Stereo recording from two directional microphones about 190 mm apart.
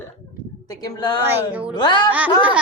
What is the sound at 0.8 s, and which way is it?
Speech, 20° left (ahead or behind).